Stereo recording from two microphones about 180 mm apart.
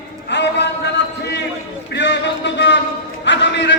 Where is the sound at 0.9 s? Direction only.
70° left (ahead or behind).